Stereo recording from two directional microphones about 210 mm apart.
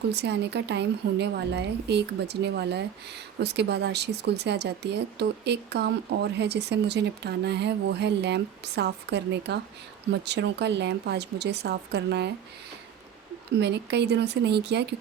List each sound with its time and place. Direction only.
0.1 s speech: 55° right (ahead or behind)
13.6 s speech: 55° right (ahead or behind)